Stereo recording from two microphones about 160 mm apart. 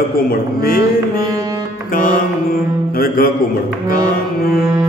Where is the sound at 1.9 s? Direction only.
60° left (ahead or behind).